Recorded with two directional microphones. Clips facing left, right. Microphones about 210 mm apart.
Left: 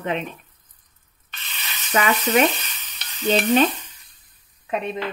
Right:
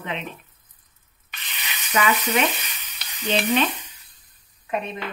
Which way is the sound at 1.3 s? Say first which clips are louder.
Right 1 dB; 15° right (ahead or behind).